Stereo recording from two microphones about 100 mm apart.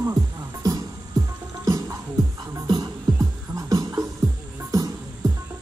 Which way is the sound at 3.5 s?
35° right (ahead or behind).